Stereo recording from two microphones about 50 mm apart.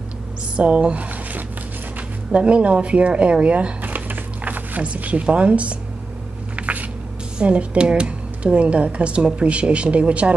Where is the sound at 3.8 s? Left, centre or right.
Right.